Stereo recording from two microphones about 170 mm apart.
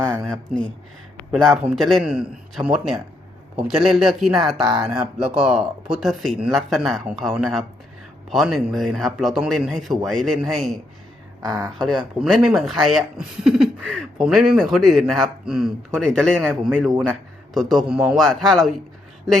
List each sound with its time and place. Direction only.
1.5 s speech: centre (ahead or behind)
11.4 s speech: 20° right (ahead or behind)
11.8 s speech: centre (ahead or behind)